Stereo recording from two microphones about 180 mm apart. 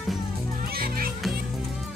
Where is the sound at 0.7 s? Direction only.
55° right (ahead or behind).